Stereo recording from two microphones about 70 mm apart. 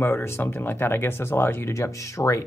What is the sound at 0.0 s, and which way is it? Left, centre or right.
Speech, left.